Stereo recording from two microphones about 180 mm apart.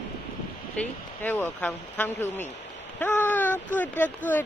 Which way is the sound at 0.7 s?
10° left (ahead or behind).